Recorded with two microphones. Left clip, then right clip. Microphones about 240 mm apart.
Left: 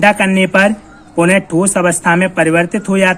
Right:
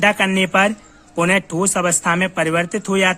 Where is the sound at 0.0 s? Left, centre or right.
Right.